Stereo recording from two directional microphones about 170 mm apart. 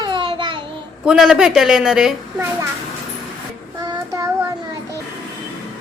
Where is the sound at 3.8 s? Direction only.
20° right (ahead or behind).